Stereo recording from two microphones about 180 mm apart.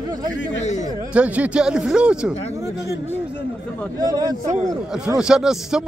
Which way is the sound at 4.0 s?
20° right (ahead or behind).